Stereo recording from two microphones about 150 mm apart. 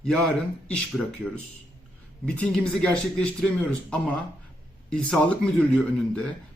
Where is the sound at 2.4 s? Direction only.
5° left (ahead or behind).